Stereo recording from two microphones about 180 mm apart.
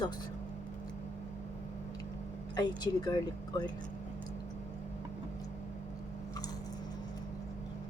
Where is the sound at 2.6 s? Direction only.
20° left (ahead or behind).